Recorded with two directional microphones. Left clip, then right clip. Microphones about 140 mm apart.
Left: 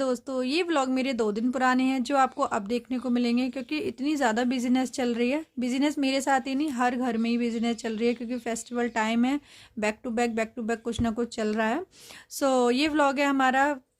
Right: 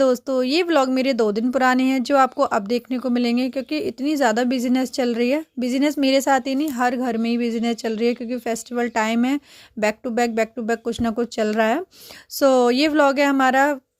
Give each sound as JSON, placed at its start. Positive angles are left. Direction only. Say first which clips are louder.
{"t": 0.0, "sound": "speech", "louder": "right 10 dB", "side_deg": -50}